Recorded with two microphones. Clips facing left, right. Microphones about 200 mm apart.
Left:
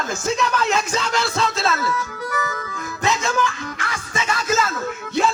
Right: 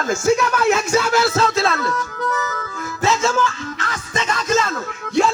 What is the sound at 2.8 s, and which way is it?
Music, 15° left (ahead or behind).